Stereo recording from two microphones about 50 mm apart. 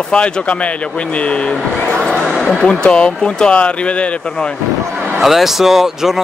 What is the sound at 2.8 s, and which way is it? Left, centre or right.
Speech, centre.